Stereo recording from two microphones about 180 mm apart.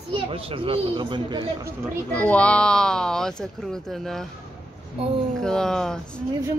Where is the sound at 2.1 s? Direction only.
10° left (ahead or behind).